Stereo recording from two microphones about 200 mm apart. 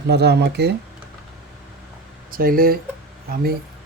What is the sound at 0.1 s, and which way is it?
Speech, 55° right (ahead or behind).